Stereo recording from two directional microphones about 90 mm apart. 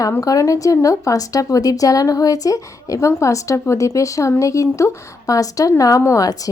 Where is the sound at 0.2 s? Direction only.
40° left (ahead or behind).